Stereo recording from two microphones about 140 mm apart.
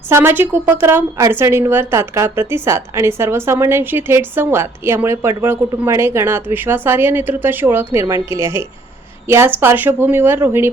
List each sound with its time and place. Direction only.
0.1 s a woman's voice: 15° right (ahead or behind)